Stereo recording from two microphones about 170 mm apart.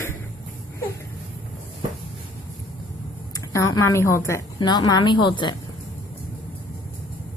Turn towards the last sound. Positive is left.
turn(degrees=25)  # may be behind; listen again after turning